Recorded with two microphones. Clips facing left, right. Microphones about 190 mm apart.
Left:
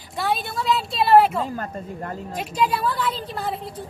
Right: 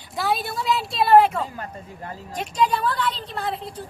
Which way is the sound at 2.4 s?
5° left (ahead or behind).